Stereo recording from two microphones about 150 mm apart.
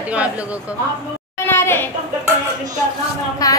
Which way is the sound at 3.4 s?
25° left (ahead or behind).